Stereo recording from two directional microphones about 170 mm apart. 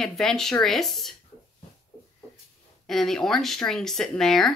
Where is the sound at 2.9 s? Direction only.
Centre (ahead or behind).